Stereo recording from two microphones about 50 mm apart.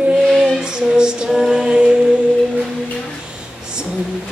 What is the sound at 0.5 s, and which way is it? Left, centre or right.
Music, centre.